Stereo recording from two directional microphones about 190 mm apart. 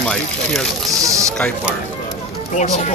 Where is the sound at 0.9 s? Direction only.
15° right (ahead or behind).